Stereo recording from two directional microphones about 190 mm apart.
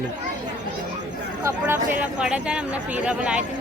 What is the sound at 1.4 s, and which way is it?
Speech, 10° right (ahead or behind).